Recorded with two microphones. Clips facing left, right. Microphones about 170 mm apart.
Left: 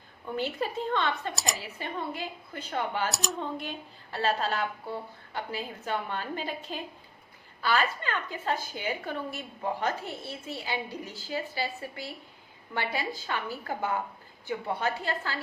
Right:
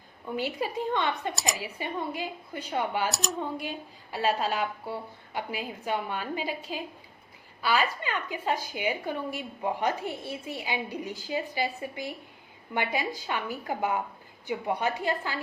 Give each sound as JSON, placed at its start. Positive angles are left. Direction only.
{"t": 0.3, "sound": "a woman's voice", "side_deg": -10}
{"t": 3.1, "sound": "a woman's voice", "side_deg": 0}